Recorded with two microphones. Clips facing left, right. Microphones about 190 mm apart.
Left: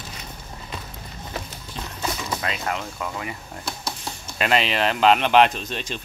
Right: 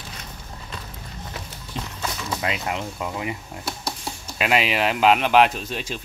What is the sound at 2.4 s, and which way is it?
Speech, 20° right (ahead or behind).